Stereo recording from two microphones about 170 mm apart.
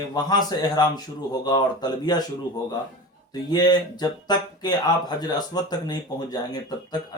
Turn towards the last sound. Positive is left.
turn(degrees=20)  # may be behind; listen again after turning